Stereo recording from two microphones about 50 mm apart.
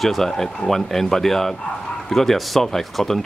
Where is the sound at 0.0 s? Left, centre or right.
Centre.